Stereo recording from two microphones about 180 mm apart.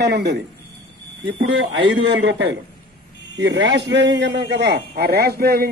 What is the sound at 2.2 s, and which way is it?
Speech, 90° right.